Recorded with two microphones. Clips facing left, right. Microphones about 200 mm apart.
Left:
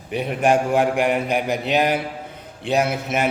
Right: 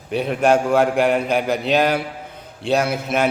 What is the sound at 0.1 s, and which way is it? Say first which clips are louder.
A man's voice: right 2 dB; 15° left (ahead or behind).